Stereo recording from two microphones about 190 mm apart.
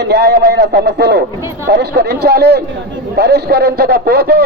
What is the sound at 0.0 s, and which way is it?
A man's voice, 60° right (ahead or behind).